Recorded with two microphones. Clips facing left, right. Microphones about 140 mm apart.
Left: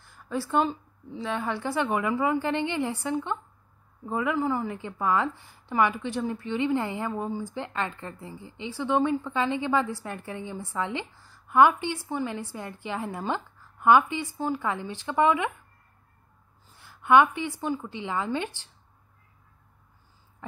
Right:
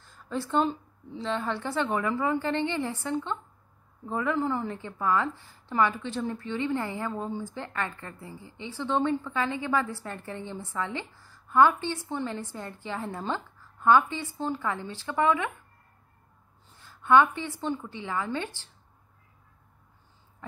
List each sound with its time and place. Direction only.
0.0 s a woman's voice: 10° left (ahead or behind)
4.8 s a woman's voice: 15° left (ahead or behind)
16.6 s a woman's voice: 10° left (ahead or behind)